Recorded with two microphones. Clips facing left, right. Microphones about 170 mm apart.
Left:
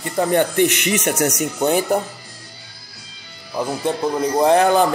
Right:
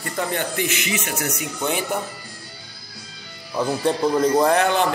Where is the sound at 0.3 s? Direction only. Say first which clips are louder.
Left 12 dB; 55° left (ahead or behind).